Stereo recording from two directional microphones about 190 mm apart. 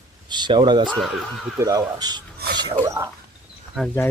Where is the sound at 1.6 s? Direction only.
15° right (ahead or behind).